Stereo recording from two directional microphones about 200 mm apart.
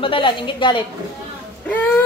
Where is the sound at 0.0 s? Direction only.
25° left (ahead or behind).